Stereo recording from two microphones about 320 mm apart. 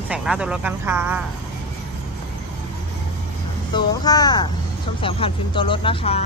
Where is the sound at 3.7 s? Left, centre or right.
Centre.